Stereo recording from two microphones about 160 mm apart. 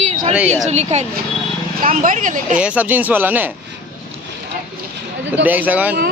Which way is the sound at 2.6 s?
10° right (ahead or behind).